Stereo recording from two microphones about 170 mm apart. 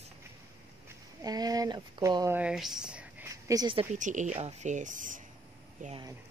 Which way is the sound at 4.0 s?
45° right (ahead or behind).